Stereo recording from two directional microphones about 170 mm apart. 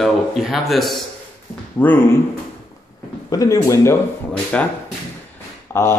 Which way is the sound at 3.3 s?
20° left (ahead or behind).